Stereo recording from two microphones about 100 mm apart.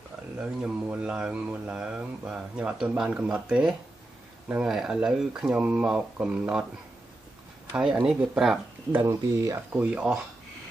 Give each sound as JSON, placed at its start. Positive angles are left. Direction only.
{"t": 0.4, "sound": "speech", "side_deg": -10}
{"t": 7.7, "sound": "speech", "side_deg": -10}
{"t": 9.0, "sound": "speech", "side_deg": -30}
{"t": 9.7, "sound": "speech", "side_deg": -15}